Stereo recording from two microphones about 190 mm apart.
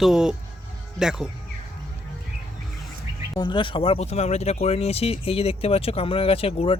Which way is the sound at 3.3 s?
25° left (ahead or behind).